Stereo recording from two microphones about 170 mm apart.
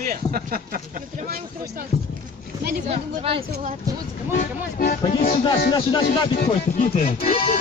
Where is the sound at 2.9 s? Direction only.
35° right (ahead or behind).